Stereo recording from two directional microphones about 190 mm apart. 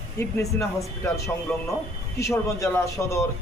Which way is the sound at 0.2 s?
15° left (ahead or behind).